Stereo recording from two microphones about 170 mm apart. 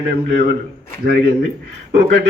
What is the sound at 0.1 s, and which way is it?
Speech, 65° right (ahead or behind).